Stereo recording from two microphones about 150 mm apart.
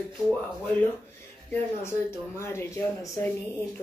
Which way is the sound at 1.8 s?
15° left (ahead or behind).